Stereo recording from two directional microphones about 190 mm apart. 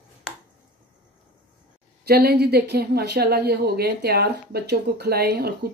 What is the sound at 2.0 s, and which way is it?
A woman's voice, 55° right (ahead or behind).